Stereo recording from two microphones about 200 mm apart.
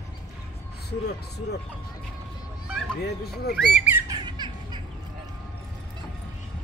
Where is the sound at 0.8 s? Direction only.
55° left (ahead or behind).